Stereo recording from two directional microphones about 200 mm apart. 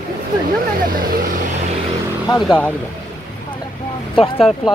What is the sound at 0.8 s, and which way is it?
Vehicle, 45° right (ahead or behind).